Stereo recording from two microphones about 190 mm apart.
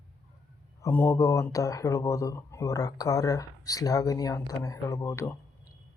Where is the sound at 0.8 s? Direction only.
15° left (ahead or behind).